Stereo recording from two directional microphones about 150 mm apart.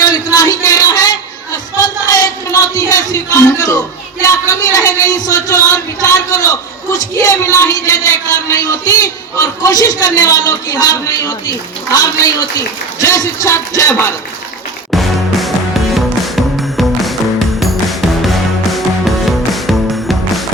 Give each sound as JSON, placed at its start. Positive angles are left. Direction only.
{"t": 0.0, "sound": "a sound", "side_deg": 25}
{"t": 4.2, "sound": "a man's voice", "side_deg": 20}
{"t": 14.8, "sound": "music", "side_deg": 0}